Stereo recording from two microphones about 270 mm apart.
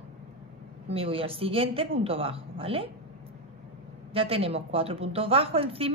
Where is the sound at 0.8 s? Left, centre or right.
Right.